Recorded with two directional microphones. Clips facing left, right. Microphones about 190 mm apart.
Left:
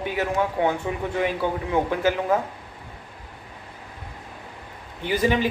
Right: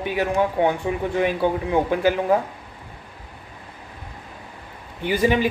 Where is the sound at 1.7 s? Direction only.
15° right (ahead or behind).